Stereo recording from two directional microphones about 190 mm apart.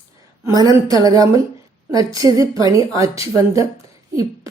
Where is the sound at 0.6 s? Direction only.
20° right (ahead or behind).